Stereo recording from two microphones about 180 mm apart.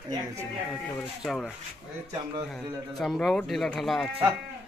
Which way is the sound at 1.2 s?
Centre (ahead or behind).